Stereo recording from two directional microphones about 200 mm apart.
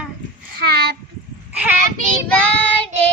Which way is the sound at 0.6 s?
50° right (ahead or behind).